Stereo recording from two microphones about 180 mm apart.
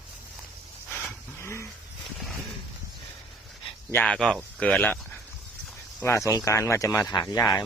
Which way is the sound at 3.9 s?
5° left (ahead or behind).